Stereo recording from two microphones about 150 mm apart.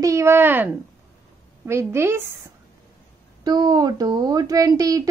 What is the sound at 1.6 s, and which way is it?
Speech, 15° right (ahead or behind).